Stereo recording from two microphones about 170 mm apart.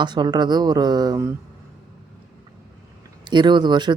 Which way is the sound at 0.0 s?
25° right (ahead or behind).